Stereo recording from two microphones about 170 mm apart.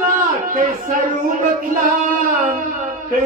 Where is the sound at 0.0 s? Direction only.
55° right (ahead or behind).